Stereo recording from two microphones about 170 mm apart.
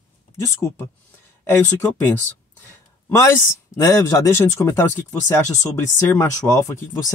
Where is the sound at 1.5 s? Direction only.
15° left (ahead or behind).